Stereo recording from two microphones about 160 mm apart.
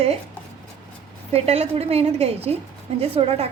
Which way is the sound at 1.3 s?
40° right (ahead or behind).